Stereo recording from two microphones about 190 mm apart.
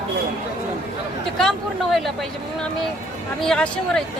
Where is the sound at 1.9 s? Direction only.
Centre (ahead or behind).